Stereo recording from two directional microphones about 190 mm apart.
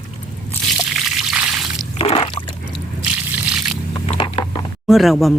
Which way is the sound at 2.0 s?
30° left (ahead or behind).